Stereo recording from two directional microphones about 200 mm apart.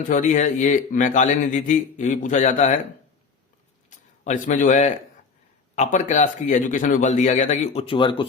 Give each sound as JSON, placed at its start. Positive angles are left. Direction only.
{"t": 0.1, "sound": "a man's voice", "side_deg": 40}
{"t": 3.8, "sound": "a man's voice", "side_deg": 40}